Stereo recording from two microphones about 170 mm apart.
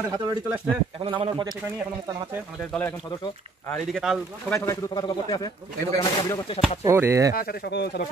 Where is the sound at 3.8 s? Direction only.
Centre (ahead or behind).